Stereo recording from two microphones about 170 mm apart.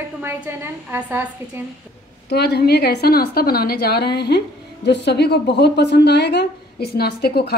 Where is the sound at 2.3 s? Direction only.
75° left (ahead or behind).